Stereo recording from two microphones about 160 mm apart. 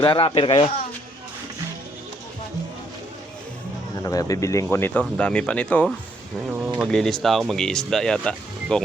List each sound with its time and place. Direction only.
0.0 s speech: 30° left (ahead or behind)
4.0 s speech: 20° left (ahead or behind); by 8.8 s 5° left (ahead or behind)